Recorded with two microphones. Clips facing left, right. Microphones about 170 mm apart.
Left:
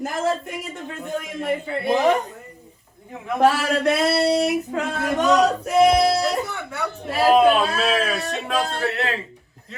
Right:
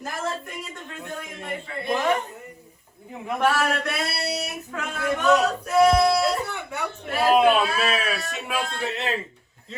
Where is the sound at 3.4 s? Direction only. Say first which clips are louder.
Left 5 dB; 30° left (ahead or behind).